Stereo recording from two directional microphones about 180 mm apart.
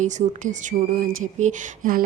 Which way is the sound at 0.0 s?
45° right (ahead or behind).